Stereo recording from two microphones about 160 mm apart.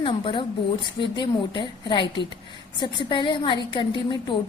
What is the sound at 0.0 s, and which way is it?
A woman's voice, 30° left (ahead or behind).